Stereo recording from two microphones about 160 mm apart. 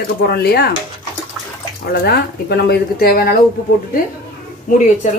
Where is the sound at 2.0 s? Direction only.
85° left; by 3.4 s 65° left (ahead or behind).